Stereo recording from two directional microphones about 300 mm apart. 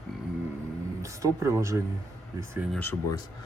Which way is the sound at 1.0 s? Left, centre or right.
Centre.